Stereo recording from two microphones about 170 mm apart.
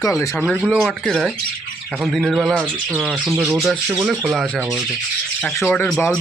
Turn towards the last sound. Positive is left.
turn(degrees=10)  # may be behind; listen again after turning